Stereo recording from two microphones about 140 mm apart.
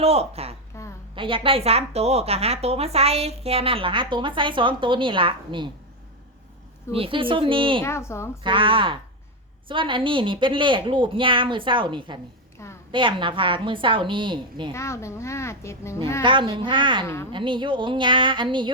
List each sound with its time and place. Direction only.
0.0 s a woman's voice: 45° right (ahead or behind)
0.7 s a sound: 20° left (ahead or behind)
1.1 s a woman's voice: 40° right (ahead or behind)
6.9 s a woman's voice: 40° right (ahead or behind)
7.9 s a child's voice: 20° left (ahead or behind)
8.4 s a woman's voice: 40° right (ahead or behind)
14.7 s a child's voice: 20° left (ahead or behind)
16.2 s a woman's voice: 35° right (ahead or behind)